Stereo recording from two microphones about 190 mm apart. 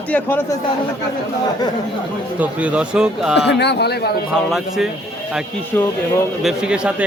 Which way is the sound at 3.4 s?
65° left (ahead or behind).